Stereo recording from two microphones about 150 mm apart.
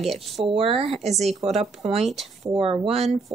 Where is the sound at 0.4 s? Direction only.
40° right (ahead or behind).